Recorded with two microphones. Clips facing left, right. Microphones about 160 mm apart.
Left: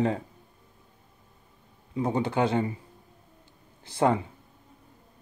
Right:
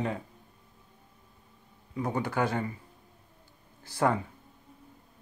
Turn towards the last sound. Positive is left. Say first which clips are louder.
# left 3 dB
turn(degrees=20)  # may be behind; listen again after turning